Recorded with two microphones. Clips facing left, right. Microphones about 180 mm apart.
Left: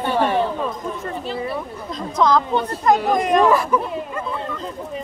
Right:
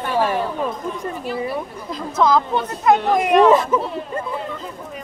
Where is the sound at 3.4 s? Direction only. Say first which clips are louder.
Right 2 dB; 20° right (ahead or behind).